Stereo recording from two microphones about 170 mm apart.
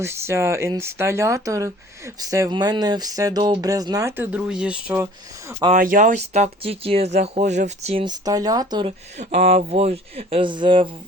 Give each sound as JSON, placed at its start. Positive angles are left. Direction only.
{"t": 0.0, "sound": "speech", "side_deg": -15}
{"t": 5.7, "sound": "speech", "side_deg": -50}
{"t": 8.0, "sound": "speech", "side_deg": -20}
{"t": 9.1, "sound": "speech", "side_deg": -40}